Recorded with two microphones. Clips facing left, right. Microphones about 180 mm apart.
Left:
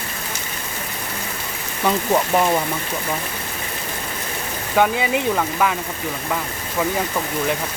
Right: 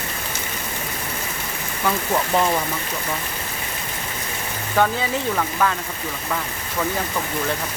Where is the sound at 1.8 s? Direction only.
15° left (ahead or behind).